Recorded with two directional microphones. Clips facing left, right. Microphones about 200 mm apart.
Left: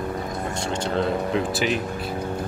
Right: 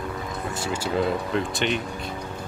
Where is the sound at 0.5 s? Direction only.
5° right (ahead or behind).